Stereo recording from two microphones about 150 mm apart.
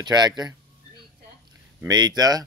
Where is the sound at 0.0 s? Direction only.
30° right (ahead or behind).